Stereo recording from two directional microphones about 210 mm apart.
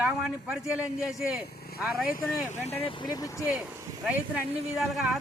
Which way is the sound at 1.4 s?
50° left (ahead or behind).